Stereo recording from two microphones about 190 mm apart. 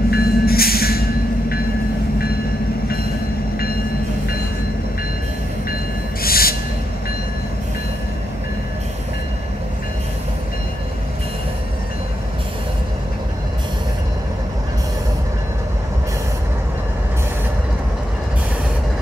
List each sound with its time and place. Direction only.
0.1 s train: 55° left (ahead or behind)
6.2 s owl: 50° left (ahead or behind)